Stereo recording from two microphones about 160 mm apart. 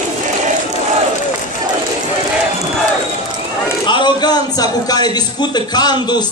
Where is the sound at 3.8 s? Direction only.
30° left (ahead or behind).